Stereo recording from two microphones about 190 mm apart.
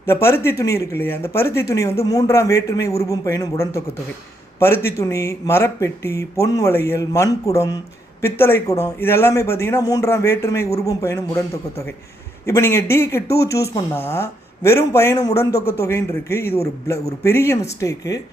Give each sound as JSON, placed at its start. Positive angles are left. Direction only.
{"t": 0.0, "sound": "speech", "side_deg": 10}
{"t": 12.5, "sound": "speech", "side_deg": 15}